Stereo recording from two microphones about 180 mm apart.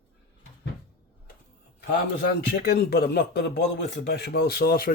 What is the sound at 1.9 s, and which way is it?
A man's voice, 60° left (ahead or behind).